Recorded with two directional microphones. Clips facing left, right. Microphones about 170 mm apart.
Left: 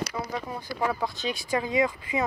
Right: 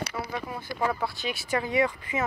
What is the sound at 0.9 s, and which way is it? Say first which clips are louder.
Speech: left 1 dB; 15° left (ahead or behind).